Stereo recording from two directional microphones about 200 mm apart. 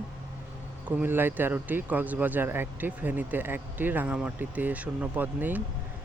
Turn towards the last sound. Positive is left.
turn(degrees=-10)  # may be behind; listen again after turning